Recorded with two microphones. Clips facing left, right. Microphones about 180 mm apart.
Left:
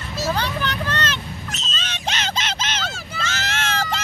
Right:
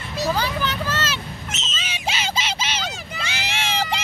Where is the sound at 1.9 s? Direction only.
10° right (ahead or behind).